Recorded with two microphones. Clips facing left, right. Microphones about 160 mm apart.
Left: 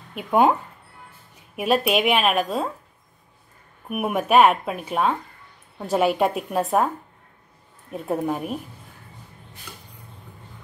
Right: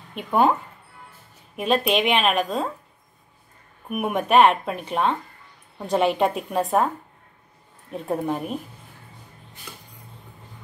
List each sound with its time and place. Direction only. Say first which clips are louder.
0.1 s speech: left 1 dB; 10° left (ahead or behind)
1.6 s speech: left 1 dB; 5° left (ahead or behind)
3.9 s speech: even; 5° left (ahead or behind)
7.9 s speech: left 1 dB; 5° left (ahead or behind)